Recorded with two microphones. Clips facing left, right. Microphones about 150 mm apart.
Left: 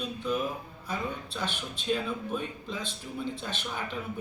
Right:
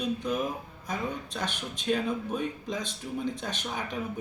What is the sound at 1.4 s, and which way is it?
Speech, 15° right (ahead or behind).